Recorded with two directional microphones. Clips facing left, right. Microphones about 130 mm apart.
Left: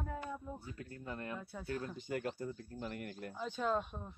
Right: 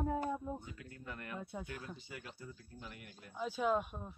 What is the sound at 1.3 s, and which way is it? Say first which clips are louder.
Speech: right 1 dB; 20° right (ahead or behind).